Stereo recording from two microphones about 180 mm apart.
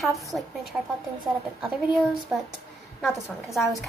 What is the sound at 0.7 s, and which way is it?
Speech, 5° right (ahead or behind).